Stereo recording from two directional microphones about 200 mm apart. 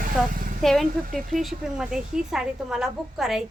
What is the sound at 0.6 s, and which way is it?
A woman's voice, centre (ahead or behind).